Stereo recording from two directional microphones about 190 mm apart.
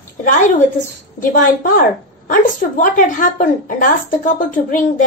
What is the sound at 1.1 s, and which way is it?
A woman's voice, 45° left (ahead or behind).